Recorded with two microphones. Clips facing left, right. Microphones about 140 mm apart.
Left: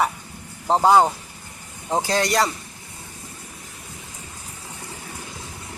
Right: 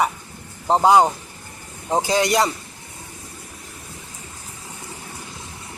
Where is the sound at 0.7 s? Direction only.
10° right (ahead or behind).